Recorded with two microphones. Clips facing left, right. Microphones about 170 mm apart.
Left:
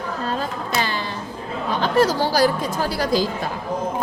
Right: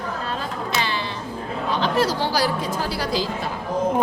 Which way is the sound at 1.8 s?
45° left (ahead or behind).